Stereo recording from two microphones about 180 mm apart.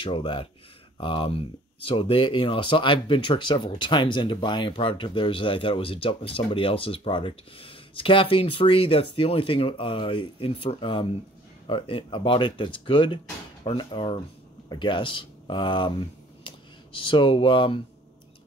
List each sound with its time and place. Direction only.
0.0 s speech: 30° left (ahead or behind)
17.0 s speech: 30° left (ahead or behind)